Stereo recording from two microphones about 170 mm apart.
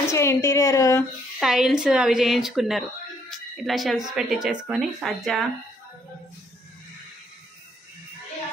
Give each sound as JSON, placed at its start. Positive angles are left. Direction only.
{"t": 0.1, "sound": "speech", "side_deg": 15}
{"t": 1.4, "sound": "a woman's voice", "side_deg": 0}